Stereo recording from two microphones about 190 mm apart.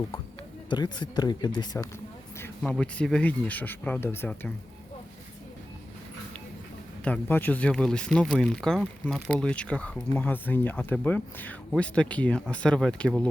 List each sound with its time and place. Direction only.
0.7 s speech: 25° left (ahead or behind)
2.4 s speech: 5° left (ahead or behind)
7.0 s speech: 10° left (ahead or behind)